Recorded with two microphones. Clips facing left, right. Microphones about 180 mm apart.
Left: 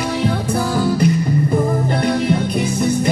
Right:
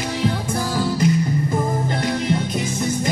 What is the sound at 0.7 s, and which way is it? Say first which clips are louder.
Music: left 2 dB; 60° left (ahead or behind).